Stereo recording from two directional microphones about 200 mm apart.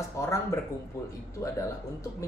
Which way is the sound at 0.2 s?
15° left (ahead or behind).